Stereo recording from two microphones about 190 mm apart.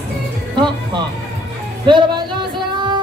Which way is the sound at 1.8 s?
25° right (ahead or behind).